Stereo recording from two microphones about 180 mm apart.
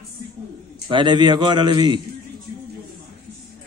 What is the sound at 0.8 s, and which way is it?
Speech, 25° right (ahead or behind).